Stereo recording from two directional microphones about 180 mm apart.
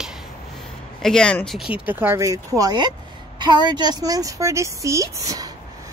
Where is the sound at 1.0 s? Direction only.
5° left (ahead or behind).